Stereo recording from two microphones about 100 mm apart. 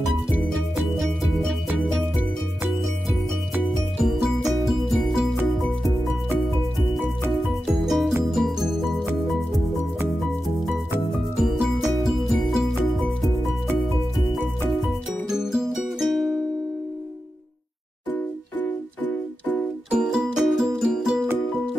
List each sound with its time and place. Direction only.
4.0 s music: centre (ahead or behind)
7.3 s music: centre (ahead or behind)
11.3 s music: centre (ahead or behind)
14.7 s music: 5° right (ahead or behind)
18.1 s music: 20° left (ahead or behind)
19.9 s music: 5° right (ahead or behind)